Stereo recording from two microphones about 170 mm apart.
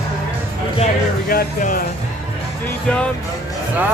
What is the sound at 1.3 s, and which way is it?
Speech, 60° left (ahead or behind).